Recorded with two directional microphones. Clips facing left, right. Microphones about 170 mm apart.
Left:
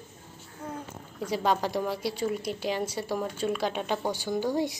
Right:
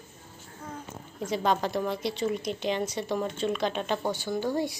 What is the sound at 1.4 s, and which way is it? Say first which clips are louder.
A woman's voice: even; 10° left (ahead or behind).